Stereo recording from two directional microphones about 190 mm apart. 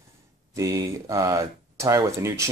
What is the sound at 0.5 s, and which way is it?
Speech, 15° right (ahead or behind).